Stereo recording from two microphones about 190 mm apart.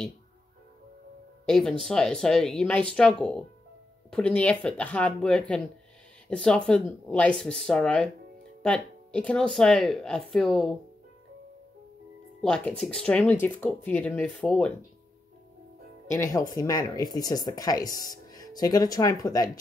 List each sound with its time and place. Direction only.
1.4 s speech: centre (ahead or behind)
12.4 s speech: 5° left (ahead or behind)
16.1 s speech: 15° left (ahead or behind)